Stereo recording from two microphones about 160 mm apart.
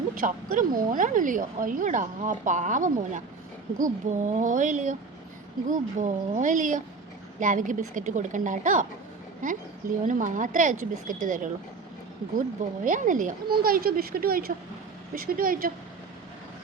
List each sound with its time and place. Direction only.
0.1 s a woman's voice: 60° right (ahead or behind)
12.8 s speech: 55° right (ahead or behind)